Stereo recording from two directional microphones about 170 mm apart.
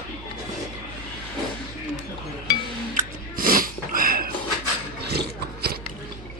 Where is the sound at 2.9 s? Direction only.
55° right (ahead or behind).